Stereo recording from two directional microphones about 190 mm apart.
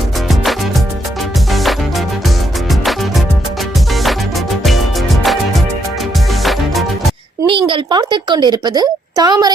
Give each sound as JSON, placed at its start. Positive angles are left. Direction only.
{"t": 1.5, "sound": "music", "side_deg": 0}
{"t": 4.6, "sound": "music", "side_deg": 0}
{"t": 7.4, "sound": "a woman's voice", "side_deg": -25}